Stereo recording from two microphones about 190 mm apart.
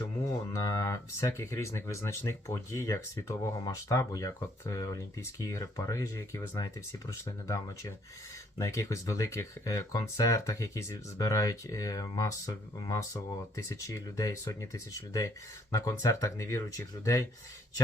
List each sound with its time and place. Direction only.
0.5 s speech: 20° left (ahead or behind)